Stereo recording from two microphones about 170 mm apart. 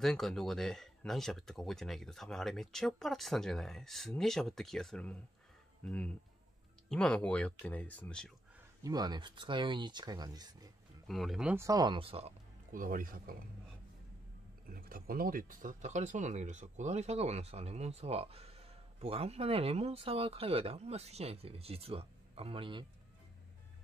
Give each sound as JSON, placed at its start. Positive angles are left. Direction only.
{"t": 0.0, "sound": "speech", "side_deg": 0}
{"t": 8.8, "sound": "speech", "side_deg": -25}
{"t": 11.1, "sound": "speech", "side_deg": 0}
{"t": 11.5, "sound": "speech", "side_deg": -20}
{"t": 12.7, "sound": "speech", "side_deg": -55}
{"t": 14.7, "sound": "speech", "side_deg": -60}